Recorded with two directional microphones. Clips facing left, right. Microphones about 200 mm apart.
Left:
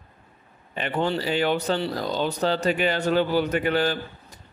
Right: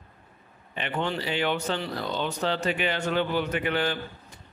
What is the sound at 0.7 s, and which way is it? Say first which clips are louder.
Speech: left 4 dB; 40° left (ahead or behind).